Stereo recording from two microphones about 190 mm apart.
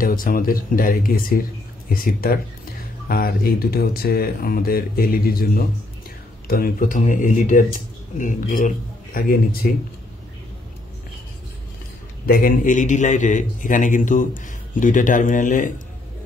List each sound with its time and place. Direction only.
0.0 s a man's voice: 50° left (ahead or behind)
12.3 s a man's voice: 50° left (ahead or behind)